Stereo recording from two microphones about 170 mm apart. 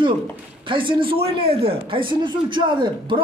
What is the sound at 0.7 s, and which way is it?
A man's voice, 30° right (ahead or behind).